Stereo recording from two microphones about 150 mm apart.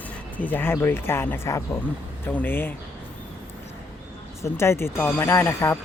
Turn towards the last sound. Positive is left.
turn(degrees=15)  # may be behind; listen again after turning